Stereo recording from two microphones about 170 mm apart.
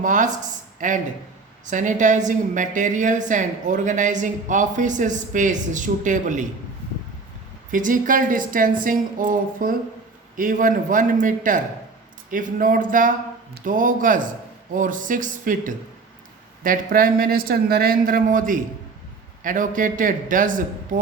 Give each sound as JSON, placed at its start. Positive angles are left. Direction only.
{"t": 0.0, "sound": "a woman's voice", "side_deg": -50}
{"t": 7.7, "sound": "a woman's voice", "side_deg": -50}